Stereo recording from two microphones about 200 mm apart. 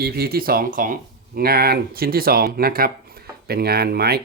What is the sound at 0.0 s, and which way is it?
Speech, 50° right (ahead or behind).